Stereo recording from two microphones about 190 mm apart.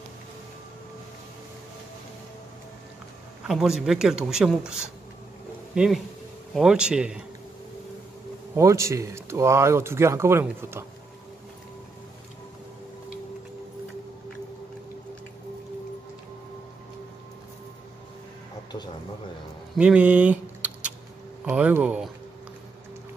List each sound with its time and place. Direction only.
3.4 s speech: centre (ahead or behind)
6.5 s speech: 5° right (ahead or behind)
8.5 s speech: 15° right (ahead or behind)
19.7 s a sound: 5° right (ahead or behind)
21.5 s speech: 10° right (ahead or behind)